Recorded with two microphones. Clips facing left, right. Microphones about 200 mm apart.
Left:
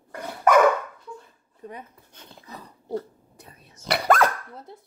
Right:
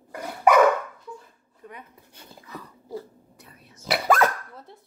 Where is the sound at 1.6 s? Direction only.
35° left (ahead or behind).